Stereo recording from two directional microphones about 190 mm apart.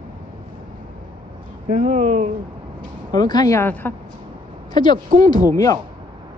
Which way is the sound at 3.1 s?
20° left (ahead or behind).